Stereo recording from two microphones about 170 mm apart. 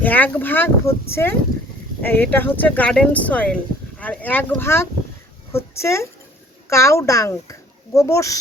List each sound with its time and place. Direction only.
0.0 s speech: 10° left (ahead or behind)